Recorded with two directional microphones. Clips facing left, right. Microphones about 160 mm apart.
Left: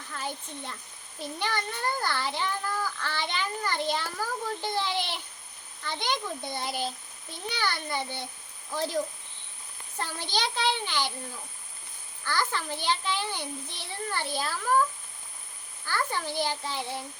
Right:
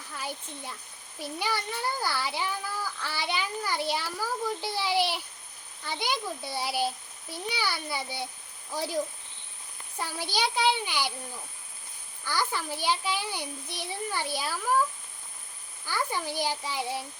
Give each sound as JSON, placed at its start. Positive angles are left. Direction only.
{"t": 0.2, "sound": "a child's voice", "side_deg": -10}
{"t": 10.0, "sound": "a child's voice", "side_deg": -10}
{"t": 12.2, "sound": "a child's voice", "side_deg": -10}
{"t": 15.9, "sound": "a child's voice", "side_deg": -10}